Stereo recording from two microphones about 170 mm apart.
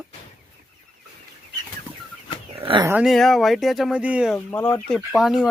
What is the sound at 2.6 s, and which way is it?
Dog, 30° right (ahead or behind).